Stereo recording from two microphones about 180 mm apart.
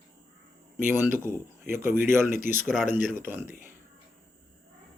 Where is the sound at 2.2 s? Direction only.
45° left (ahead or behind).